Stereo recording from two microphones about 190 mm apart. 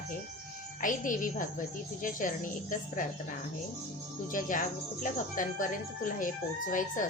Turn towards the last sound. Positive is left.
turn(degrees=45)  # may be behind; listen again after turning